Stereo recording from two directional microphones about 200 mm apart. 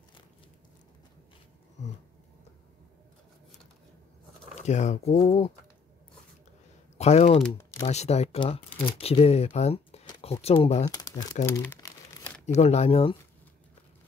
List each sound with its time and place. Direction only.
4.6 s speech: 35° left (ahead or behind)
7.0 s speech: 30° left (ahead or behind)
7.4 s typing: 10° left (ahead or behind)
7.8 s speech: 35° left (ahead or behind)
10.9 s speech: 20° left (ahead or behind)
11.4 s crumpling: 10° left (ahead or behind)
12.5 s speech: 30° left (ahead or behind)